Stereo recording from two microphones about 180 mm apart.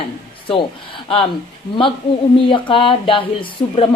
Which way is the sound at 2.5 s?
25° left (ahead or behind).